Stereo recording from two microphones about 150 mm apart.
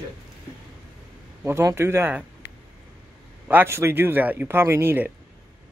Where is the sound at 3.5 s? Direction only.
15° right (ahead or behind).